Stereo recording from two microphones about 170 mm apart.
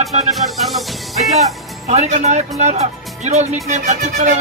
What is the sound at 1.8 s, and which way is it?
Speech, 40° right (ahead or behind).